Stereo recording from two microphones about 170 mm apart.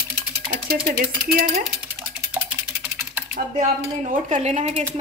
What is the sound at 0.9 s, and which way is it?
Speech, 55° right (ahead or behind).